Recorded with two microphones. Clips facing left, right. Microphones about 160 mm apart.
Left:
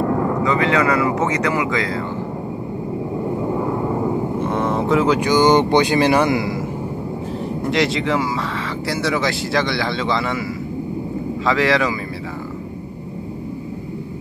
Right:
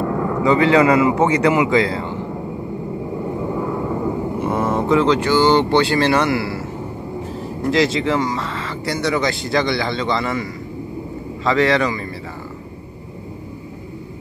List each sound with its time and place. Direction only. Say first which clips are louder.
0.4 s speech: right 8 dB; 30° right (ahead or behind)
4.4 s speech: even; 5° right (ahead or behind); by 6.6 s 15° left (ahead or behind)
7.7 s speech: right 2 dB; centre (ahead or behind)
11.4 s speech: right 2 dB; centre (ahead or behind)